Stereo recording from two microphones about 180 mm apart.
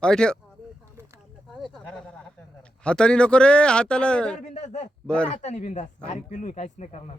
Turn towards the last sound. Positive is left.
turn(degrees=40)  # may be behind; listen again after turning